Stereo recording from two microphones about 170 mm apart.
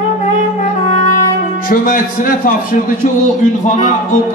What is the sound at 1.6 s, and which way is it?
A man's voice, 55° left (ahead or behind).